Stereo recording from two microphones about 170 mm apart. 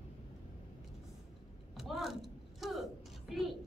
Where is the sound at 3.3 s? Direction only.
Centre (ahead or behind).